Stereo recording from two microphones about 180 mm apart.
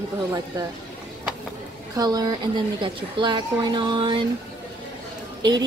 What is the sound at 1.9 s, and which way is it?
Speech, 20° right (ahead or behind).